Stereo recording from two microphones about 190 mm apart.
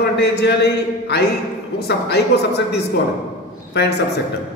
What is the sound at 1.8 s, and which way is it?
A man's voice, 60° left (ahead or behind).